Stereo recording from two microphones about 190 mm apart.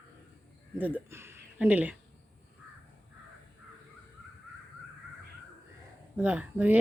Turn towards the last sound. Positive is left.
turn(degrees=-5)  # may be behind; listen again after turning